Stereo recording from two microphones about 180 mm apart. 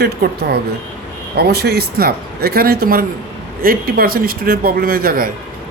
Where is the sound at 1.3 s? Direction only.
60° right (ahead or behind).